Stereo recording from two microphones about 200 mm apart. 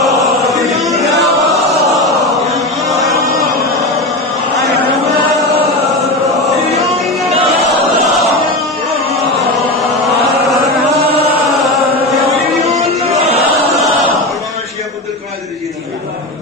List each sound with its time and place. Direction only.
0.0 s chant: centre (ahead or behind)
2.9 s a sound: centre (ahead or behind)
6.7 s music: 30° right (ahead or behind)